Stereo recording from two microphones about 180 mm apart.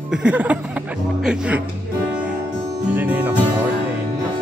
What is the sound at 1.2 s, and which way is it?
Music, 5° right (ahead or behind).